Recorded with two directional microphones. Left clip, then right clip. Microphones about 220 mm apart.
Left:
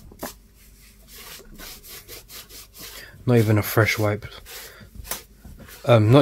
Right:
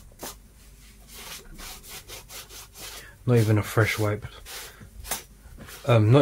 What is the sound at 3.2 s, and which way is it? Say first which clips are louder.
Speech: left 4 dB; 40° left (ahead or behind).